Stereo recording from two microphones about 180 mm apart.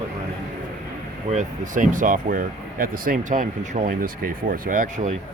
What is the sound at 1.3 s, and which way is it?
Speech, 45° right (ahead or behind).